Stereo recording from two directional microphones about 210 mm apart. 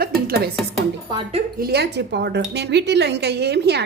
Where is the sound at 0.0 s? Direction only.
45° right (ahead or behind).